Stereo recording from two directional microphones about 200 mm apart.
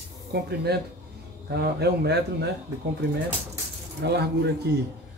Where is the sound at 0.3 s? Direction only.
55° right (ahead or behind).